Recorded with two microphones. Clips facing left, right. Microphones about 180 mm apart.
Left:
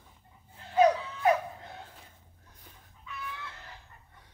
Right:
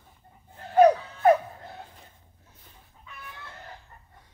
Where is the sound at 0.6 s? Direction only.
55° right (ahead or behind).